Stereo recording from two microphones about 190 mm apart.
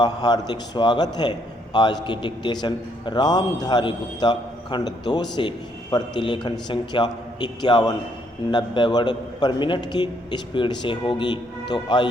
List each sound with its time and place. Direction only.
0.0 s a man's voice: 20° left (ahead or behind)